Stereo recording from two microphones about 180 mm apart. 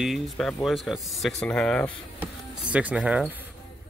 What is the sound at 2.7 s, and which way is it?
Speech, 5° right (ahead or behind).